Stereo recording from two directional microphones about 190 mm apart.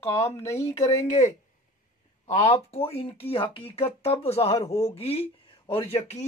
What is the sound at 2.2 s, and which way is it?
Speech, 35° left (ahead or behind).